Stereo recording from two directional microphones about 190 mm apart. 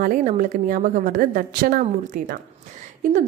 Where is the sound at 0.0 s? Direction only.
45° right (ahead or behind).